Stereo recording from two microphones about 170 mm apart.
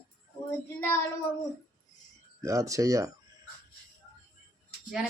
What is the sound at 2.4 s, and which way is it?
Speech, 20° right (ahead or behind).